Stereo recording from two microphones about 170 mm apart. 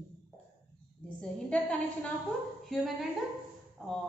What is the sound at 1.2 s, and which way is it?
A woman's voice, 5° left (ahead or behind).